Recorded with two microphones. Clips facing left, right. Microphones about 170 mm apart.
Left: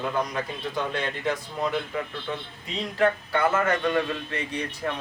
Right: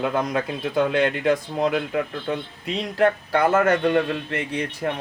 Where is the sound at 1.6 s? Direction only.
80° right; by 4.9 s 60° right (ahead or behind).